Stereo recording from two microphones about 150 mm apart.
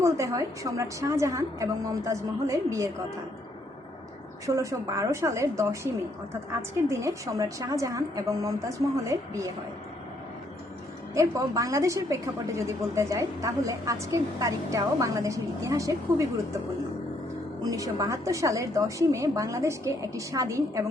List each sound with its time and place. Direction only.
0.0 s a woman's voice: 20° right (ahead or behind)
4.4 s a woman's voice: 20° right (ahead or behind)
11.1 s a woman's voice: 20° right (ahead or behind)
17.6 s a woman's voice: 25° right (ahead or behind)